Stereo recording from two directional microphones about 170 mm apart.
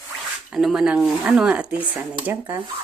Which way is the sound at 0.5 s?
5° right (ahead or behind).